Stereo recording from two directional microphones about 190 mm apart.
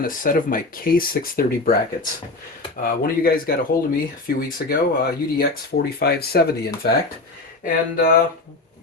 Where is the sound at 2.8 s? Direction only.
50° left (ahead or behind).